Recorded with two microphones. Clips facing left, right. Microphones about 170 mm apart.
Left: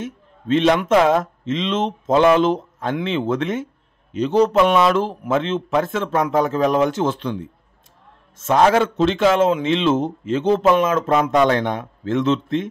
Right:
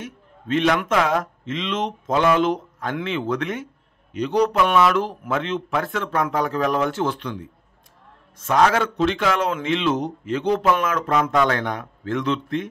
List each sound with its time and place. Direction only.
0.0 s a man's voice: 25° left (ahead or behind)